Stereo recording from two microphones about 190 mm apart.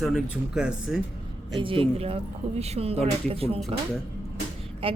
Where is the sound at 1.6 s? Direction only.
30° right (ahead or behind).